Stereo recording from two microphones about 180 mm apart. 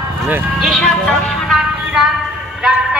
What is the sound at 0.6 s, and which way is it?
Speech, 5° left (ahead or behind).